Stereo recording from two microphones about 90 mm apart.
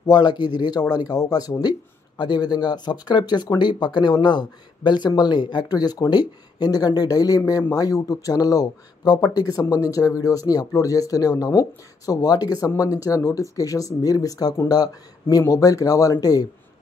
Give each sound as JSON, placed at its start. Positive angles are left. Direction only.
{"t": 0.0, "sound": "speech", "side_deg": 50}